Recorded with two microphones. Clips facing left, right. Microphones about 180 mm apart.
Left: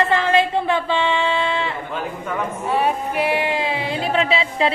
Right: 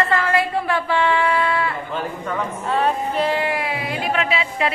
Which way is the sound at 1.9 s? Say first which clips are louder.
Left 1 dB; 5° left (ahead or behind).